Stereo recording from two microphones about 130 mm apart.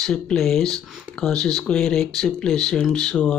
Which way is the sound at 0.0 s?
5° left (ahead or behind).